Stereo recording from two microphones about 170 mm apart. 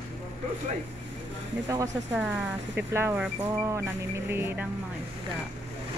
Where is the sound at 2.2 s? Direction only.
10° right (ahead or behind).